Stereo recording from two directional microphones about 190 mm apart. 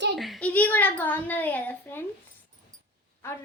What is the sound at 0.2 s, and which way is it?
A woman's voice, 5° left (ahead or behind).